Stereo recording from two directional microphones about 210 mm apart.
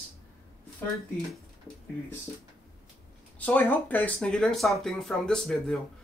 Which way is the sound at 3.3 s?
10° left (ahead or behind).